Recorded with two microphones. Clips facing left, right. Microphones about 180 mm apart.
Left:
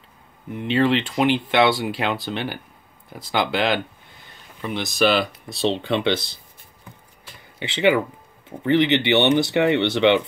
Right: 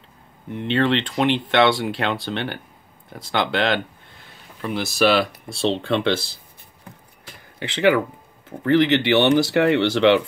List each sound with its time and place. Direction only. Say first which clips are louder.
0.5 s speech: left 1 dB; 5° left (ahead or behind)
3.1 s a sound: even; centre (ahead or behind)
4.9 s speech: right 1 dB; centre (ahead or behind)
7.5 s speech: right 1 dB; centre (ahead or behind)